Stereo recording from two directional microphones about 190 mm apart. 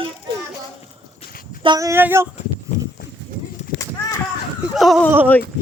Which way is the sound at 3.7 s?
50° left (ahead or behind).